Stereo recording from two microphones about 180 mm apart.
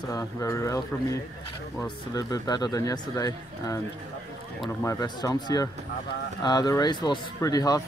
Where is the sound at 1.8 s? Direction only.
20° left (ahead or behind).